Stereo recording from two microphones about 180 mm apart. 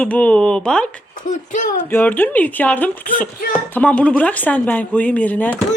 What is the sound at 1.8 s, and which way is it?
Speech, 10° left (ahead or behind).